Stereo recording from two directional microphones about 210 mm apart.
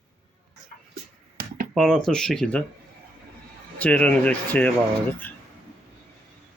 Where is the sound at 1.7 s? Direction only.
Centre (ahead or behind).